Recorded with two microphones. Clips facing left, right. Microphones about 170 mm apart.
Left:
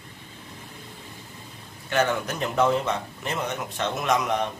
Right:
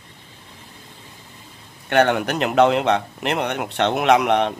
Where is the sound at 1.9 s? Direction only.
65° right (ahead or behind).